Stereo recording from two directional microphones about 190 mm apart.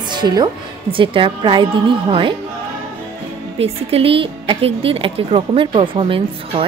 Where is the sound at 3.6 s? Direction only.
30° right (ahead or behind).